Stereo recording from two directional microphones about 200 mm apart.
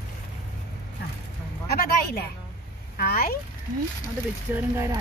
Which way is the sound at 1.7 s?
50° left (ahead or behind).